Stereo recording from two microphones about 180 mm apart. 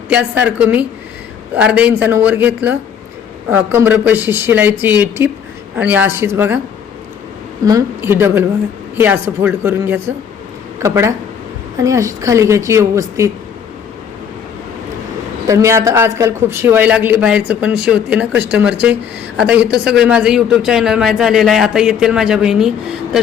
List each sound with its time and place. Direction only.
0.1 s speech: 10° right (ahead or behind)
7.6 s speech: 20° right (ahead or behind)
15.4 s speech: 15° right (ahead or behind)